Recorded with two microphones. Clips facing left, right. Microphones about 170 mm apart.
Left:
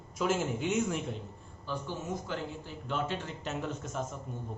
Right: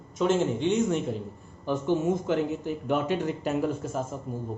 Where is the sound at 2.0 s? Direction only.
20° right (ahead or behind).